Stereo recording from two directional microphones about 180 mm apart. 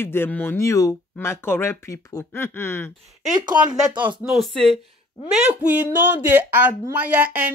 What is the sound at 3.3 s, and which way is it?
Speech, 25° right (ahead or behind).